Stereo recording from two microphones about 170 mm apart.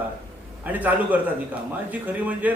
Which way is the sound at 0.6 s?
10° right (ahead or behind).